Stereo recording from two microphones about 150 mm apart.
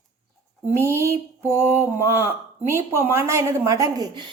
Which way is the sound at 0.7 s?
15° right (ahead or behind).